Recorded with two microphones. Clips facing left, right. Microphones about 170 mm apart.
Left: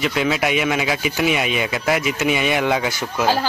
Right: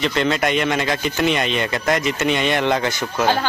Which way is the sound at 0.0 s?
5° left (ahead or behind).